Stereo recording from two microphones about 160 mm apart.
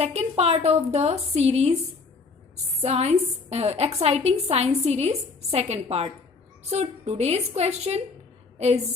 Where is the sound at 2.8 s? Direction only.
40° right (ahead or behind).